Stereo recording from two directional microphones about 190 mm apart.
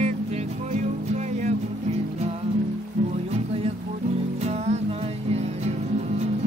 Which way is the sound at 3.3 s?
30° right (ahead or behind).